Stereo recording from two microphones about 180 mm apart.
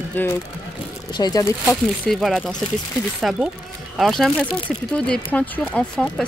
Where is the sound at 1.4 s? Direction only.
10° left (ahead or behind).